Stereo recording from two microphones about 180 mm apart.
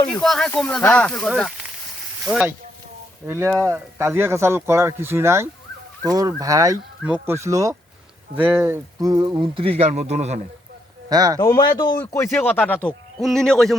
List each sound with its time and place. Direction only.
0.1 s a man's voice: 5° left (ahead or behind)
3.2 s speech: 15° right (ahead or behind); by 10.4 s 40° right (ahead or behind)
11.1 s speech: 20° right (ahead or behind)
11.3 s a man's voice: 20° left (ahead or behind); by 13.7 s 5° left (ahead or behind)